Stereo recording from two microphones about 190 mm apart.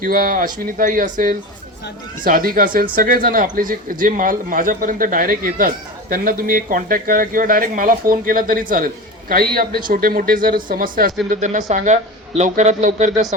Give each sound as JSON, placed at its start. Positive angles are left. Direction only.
{"t": 0.0, "sound": "speech", "side_deg": -50}